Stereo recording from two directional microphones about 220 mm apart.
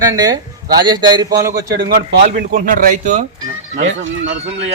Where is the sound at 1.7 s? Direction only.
50° right (ahead or behind).